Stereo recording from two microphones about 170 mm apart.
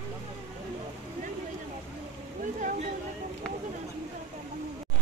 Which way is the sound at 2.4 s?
50° right (ahead or behind).